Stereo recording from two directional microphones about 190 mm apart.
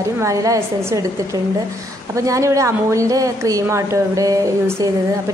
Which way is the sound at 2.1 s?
15° right (ahead or behind).